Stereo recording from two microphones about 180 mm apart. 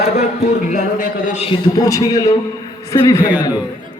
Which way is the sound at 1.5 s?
20° left (ahead or behind).